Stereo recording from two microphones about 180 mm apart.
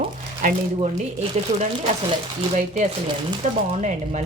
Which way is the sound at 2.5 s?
40° right (ahead or behind).